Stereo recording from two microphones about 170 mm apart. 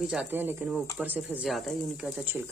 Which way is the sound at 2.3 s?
10° right (ahead or behind).